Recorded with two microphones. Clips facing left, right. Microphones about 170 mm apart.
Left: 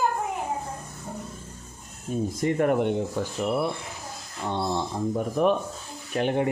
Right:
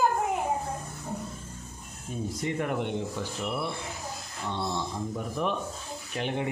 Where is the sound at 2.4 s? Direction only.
45° left (ahead or behind).